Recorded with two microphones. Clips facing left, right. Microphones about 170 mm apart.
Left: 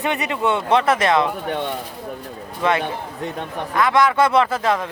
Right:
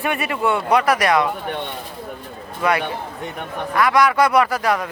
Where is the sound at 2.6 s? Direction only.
25° left (ahead or behind).